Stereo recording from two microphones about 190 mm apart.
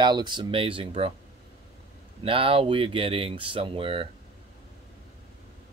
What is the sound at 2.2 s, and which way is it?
Speech, 30° right (ahead or behind).